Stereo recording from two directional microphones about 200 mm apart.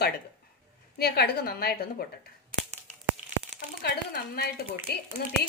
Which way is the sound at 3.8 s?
55° left (ahead or behind).